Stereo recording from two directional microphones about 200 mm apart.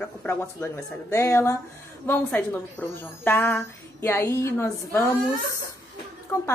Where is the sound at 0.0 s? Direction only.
10° left (ahead or behind).